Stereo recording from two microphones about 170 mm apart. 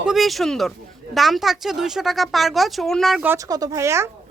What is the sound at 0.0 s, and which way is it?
Speech, centre (ahead or behind).